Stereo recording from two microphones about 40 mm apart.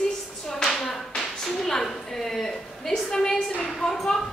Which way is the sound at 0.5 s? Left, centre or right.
Centre.